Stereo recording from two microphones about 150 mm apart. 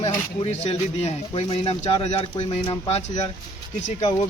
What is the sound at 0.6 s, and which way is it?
Speech, 45° left (ahead or behind).